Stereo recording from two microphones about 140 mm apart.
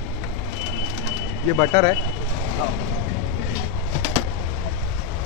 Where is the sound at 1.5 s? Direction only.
25° left (ahead or behind).